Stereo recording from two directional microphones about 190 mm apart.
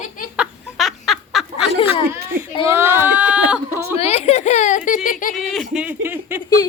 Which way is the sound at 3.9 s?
35° left (ahead or behind).